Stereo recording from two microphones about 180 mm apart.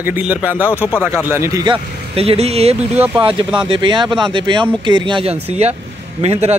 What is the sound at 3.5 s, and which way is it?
A man's voice, 25° right (ahead or behind).